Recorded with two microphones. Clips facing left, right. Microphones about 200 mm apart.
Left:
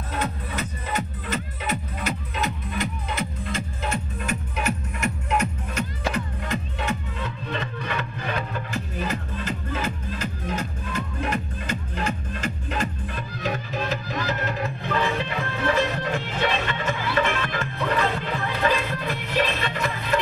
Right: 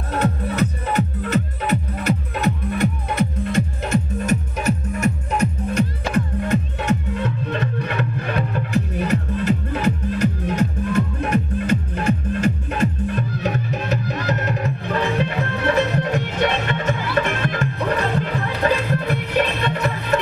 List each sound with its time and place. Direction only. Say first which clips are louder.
0.1 s music: right 8 dB; 65° right (ahead or behind)
3.9 s music: right 10 dB; 40° right (ahead or behind)
5.8 s music: right 6 dB; 55° right (ahead or behind)
11.1 s music: right 7 dB; 55° right (ahead or behind)
14.6 s music: right 3 dB; 45° right (ahead or behind)
19.0 s music: right 3 dB; 60° right (ahead or behind)